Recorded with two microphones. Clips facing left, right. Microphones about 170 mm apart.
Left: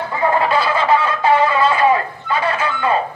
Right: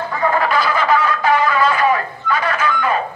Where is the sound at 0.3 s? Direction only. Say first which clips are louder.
Left 1 dB; 25° left (ahead or behind).